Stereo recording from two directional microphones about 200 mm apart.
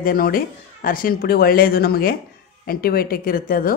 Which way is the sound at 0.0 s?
45° left (ahead or behind).